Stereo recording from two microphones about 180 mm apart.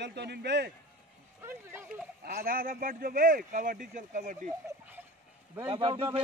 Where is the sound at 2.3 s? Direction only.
55° right (ahead or behind).